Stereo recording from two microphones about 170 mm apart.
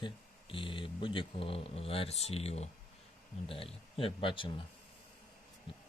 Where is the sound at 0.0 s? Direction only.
30° left (ahead or behind).